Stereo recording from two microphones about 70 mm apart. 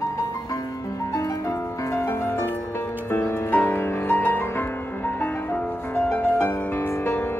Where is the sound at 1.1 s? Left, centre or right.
Left.